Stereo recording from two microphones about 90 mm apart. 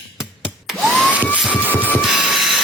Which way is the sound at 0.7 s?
5° right (ahead or behind).